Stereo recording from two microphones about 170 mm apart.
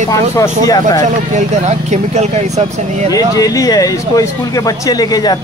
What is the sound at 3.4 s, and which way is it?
A man's voice, 20° left (ahead or behind).